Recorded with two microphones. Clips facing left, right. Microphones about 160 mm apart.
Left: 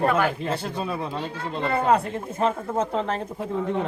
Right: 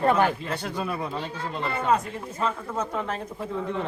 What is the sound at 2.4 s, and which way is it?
Speech, 25° left (ahead or behind).